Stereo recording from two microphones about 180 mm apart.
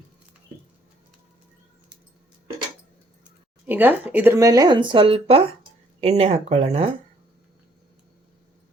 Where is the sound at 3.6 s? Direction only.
10° right (ahead or behind); by 6.9 s 35° right (ahead or behind).